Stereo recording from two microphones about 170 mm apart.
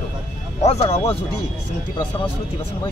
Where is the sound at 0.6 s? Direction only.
40° left (ahead or behind).